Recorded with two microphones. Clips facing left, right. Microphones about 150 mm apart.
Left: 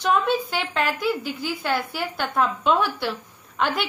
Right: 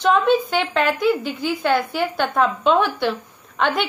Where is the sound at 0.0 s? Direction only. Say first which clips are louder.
Right 5 dB; 10° left (ahead or behind).